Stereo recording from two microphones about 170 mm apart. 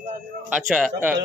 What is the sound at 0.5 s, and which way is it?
Speech, 5° right (ahead or behind).